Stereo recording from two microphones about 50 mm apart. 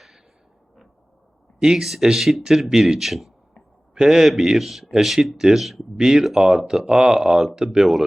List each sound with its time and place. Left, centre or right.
1.5 s a man's voice: centre